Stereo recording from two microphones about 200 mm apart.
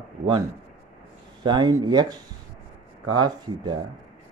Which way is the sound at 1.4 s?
20° right (ahead or behind).